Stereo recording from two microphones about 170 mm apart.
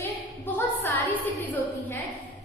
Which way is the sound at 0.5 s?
10° left (ahead or behind).